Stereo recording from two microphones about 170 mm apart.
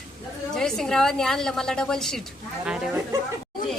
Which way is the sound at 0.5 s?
5° left (ahead or behind).